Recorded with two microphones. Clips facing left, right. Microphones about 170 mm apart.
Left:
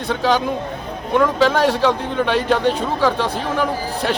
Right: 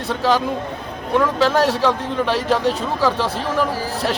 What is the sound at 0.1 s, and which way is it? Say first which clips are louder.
A man's voice: even; centre (ahead or behind).